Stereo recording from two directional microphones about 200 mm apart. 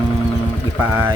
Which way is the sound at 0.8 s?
10° right (ahead or behind).